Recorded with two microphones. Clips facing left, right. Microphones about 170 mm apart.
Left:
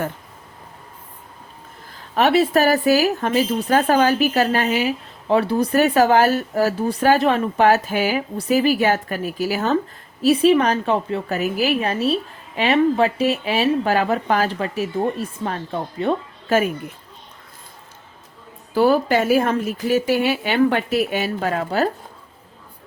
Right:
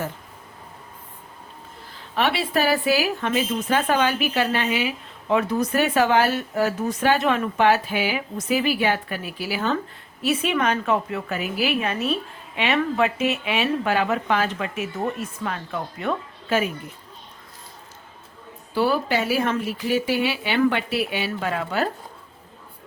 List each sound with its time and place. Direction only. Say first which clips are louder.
1.9 s a woman's voice: left 6 dB; 45° left (ahead or behind); by 11.3 s 30° left (ahead or behind)
11.3 s a woman's voice: left 4 dB; 45° left (ahead or behind)
16.5 s speech: left 4 dB; 50° left (ahead or behind)
18.7 s speech: left 5 dB; 45° left (ahead or behind)